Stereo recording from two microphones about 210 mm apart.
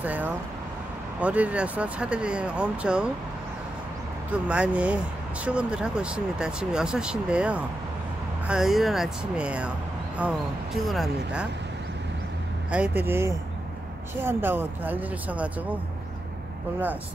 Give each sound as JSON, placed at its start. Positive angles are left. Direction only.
{"t": 0.0, "sound": "speech", "side_deg": -5}
{"t": 4.3, "sound": "speech", "side_deg": -5}
{"t": 12.7, "sound": "speech", "side_deg": -10}